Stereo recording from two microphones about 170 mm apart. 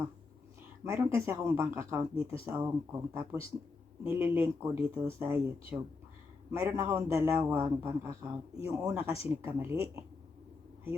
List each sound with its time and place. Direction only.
0.9 s a man's voice: 15° right (ahead or behind)